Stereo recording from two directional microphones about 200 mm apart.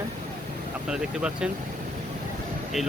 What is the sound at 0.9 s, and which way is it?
Speech, 5° right (ahead or behind).